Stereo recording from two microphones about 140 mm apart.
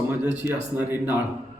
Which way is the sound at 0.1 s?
15° right (ahead or behind).